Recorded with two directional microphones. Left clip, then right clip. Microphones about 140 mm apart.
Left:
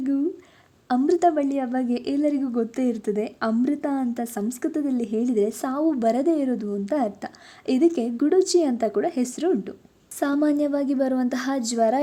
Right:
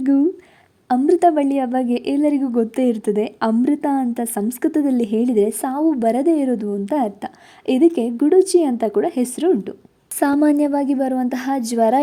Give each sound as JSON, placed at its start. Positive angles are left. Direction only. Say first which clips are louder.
{"t": 0.0, "sound": "a sound", "louder": "right 8 dB", "side_deg": -40}
{"t": 0.9, "sound": "a woman's voice", "louder": "right 5 dB", "side_deg": -25}
{"t": 10.2, "sound": "a woman's voice", "louder": "right 6 dB", "side_deg": -35}